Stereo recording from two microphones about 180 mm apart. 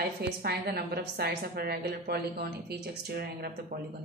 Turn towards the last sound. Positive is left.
turn(degrees=-60)  # may be behind; listen again after turning